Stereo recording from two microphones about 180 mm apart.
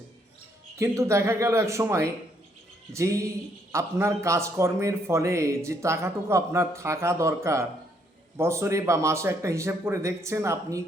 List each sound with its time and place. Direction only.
0.8 s a man's voice: 15° right (ahead or behind)